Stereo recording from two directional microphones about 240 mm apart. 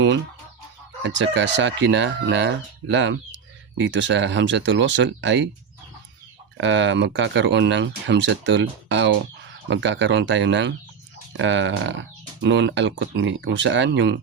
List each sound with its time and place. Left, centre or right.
1.0 s speech: right
6.6 s speech: right